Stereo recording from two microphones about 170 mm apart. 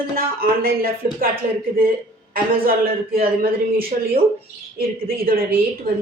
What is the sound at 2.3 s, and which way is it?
Speech, 60° right (ahead or behind).